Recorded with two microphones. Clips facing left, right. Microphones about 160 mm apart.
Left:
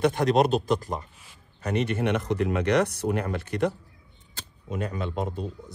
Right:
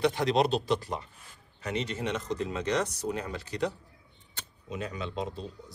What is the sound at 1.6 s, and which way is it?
Speech, 55° left (ahead or behind).